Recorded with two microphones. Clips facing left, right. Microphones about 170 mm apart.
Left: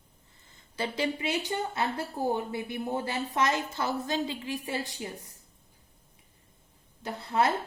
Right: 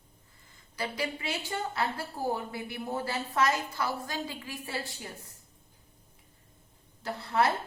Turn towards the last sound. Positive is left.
turn(degrees=20)  # may be behind; listen again after turning